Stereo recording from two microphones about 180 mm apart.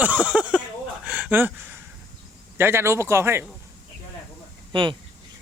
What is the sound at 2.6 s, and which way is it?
Speech, 15° right (ahead or behind).